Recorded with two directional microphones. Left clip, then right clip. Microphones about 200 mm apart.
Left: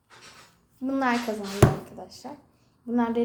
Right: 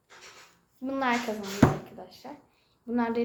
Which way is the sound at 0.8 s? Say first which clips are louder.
Left 4 dB; 10° left (ahead or behind).